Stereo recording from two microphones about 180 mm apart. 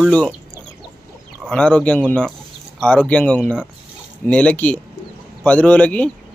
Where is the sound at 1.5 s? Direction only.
5° left (ahead or behind).